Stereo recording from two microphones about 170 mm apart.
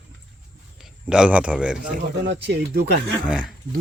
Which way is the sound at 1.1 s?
5° right (ahead or behind).